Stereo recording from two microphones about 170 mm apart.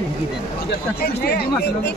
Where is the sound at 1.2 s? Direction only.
75° left (ahead or behind).